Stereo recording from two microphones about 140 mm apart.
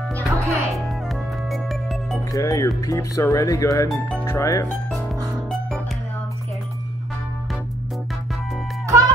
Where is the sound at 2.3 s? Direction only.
25° left (ahead or behind).